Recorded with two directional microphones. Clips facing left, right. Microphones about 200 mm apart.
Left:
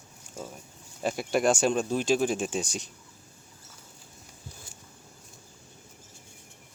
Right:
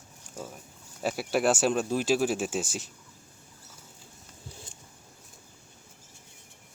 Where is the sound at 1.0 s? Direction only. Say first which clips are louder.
Left 1 dB; 5° right (ahead or behind).